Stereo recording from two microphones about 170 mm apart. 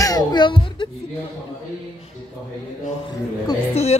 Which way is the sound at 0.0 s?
25° left (ahead or behind).